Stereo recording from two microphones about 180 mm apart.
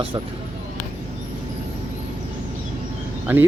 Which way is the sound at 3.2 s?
10° right (ahead or behind).